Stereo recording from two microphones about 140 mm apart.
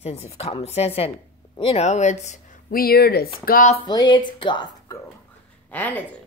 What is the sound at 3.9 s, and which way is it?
Speech, 30° left (ahead or behind).